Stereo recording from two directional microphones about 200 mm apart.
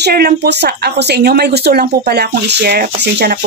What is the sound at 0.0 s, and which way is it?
A woman's voice, 50° right (ahead or behind).